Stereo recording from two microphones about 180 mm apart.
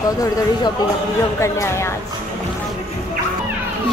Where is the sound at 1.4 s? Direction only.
15° left (ahead or behind).